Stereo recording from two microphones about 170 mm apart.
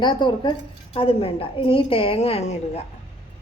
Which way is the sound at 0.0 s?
25° left (ahead or behind).